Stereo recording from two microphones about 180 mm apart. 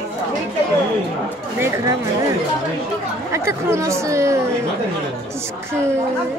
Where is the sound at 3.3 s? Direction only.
15° right (ahead or behind).